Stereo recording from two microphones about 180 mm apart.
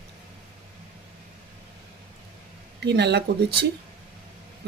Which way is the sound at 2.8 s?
70° right (ahead or behind).